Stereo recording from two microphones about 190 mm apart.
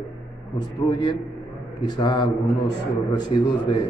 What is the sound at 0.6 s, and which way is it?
A man's voice, 20° left (ahead or behind).